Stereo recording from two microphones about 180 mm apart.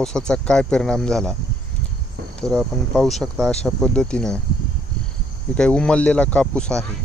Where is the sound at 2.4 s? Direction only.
Centre (ahead or behind).